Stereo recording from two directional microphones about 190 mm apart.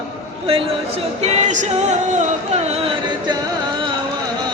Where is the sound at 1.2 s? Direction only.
35° right (ahead or behind).